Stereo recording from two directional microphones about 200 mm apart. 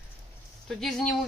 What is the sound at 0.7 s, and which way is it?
Speech, centre (ahead or behind).